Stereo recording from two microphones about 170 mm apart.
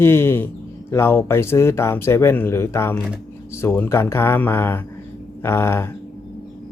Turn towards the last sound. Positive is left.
turn(degrees=15)  # may be behind; listen again after turning